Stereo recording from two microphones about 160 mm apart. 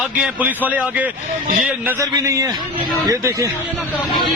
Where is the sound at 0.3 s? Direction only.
10° right (ahead or behind).